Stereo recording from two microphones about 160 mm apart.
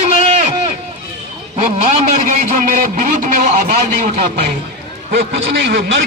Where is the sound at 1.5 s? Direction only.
50° right (ahead or behind).